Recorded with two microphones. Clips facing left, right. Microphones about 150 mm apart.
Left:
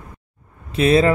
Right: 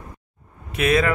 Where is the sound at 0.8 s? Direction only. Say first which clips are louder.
Left 5 dB; 30° left (ahead or behind).